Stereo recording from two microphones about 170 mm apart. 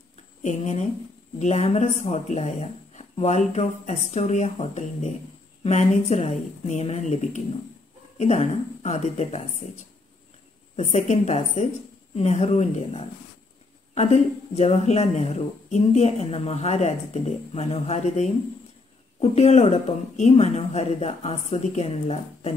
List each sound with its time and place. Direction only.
0.4 s speech: 45° left (ahead or behind)
10.8 s speech: 45° left (ahead or behind)